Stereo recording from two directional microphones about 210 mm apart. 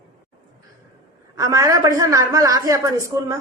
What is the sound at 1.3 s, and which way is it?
A woman's voice, 15° right (ahead or behind).